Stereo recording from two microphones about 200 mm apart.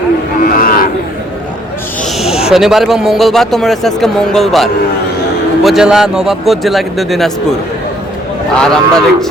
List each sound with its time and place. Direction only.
0.4 s cattle: 45° left (ahead or behind)
2.1 s speech: centre (ahead or behind)
8.5 s speech: 5° left (ahead or behind)